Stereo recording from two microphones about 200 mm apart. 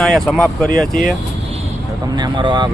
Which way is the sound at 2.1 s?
20° right (ahead or behind).